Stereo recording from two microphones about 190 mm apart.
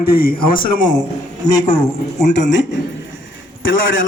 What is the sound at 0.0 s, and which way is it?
Speech, 50° left (ahead or behind).